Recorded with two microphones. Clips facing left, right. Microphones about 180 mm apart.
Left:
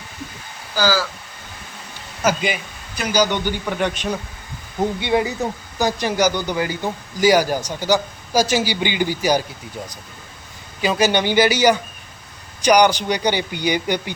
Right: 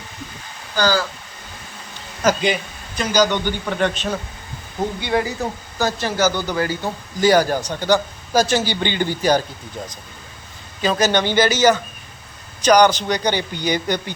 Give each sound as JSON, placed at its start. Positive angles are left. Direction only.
{"t": 0.8, "sound": "speech", "side_deg": 5}
{"t": 2.2, "sound": "a man's voice", "side_deg": 10}
{"t": 10.8, "sound": "a man's voice", "side_deg": 10}